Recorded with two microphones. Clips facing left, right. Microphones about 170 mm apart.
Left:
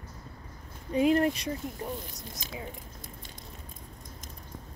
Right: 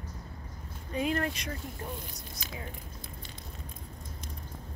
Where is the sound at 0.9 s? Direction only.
30° left (ahead or behind).